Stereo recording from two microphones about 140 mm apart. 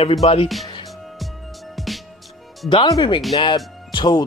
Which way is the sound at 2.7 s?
30° left (ahead or behind).